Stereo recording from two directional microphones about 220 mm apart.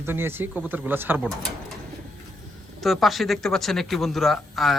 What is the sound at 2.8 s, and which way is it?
Speech, centre (ahead or behind).